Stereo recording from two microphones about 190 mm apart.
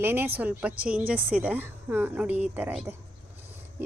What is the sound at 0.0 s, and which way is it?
A woman's voice, 10° right (ahead or behind).